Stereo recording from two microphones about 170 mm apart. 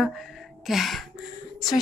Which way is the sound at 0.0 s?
Centre (ahead or behind).